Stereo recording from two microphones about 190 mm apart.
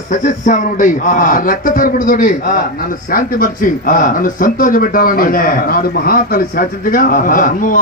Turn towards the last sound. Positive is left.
turn(degrees=45)  # may be behind; listen again after turning